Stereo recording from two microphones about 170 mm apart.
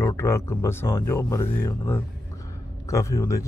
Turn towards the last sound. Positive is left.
turn(degrees=15)  # may be behind; listen again after turning